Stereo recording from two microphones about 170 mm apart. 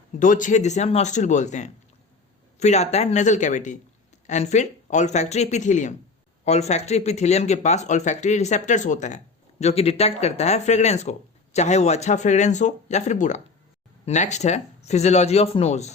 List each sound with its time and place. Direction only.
0.2 s speech: 50° left (ahead or behind)